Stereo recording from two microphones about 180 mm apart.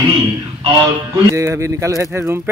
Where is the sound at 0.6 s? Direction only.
20° right (ahead or behind).